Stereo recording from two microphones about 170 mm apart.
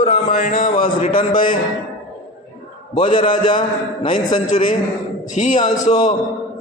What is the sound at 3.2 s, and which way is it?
A man's voice, 50° left (ahead or behind).